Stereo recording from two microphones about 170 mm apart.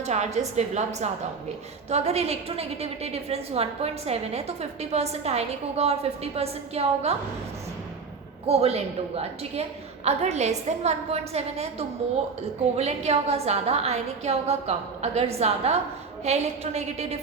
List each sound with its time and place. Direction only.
0.0 s a woman's voice: 40° right (ahead or behind)
8.4 s a woman's voice: 35° right (ahead or behind)